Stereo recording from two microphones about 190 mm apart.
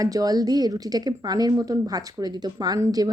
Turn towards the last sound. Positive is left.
turn(degrees=-20)  # may be behind; listen again after turning